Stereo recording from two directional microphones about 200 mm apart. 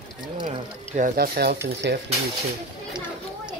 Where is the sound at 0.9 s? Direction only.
45° right (ahead or behind).